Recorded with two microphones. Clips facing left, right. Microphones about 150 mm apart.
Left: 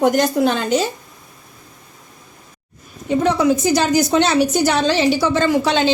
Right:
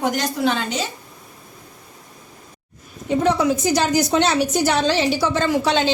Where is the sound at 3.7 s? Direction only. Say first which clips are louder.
Left 3 dB; 85° left.